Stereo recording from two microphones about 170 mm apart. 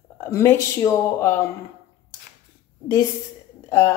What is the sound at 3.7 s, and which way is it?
Speech, 20° left (ahead or behind).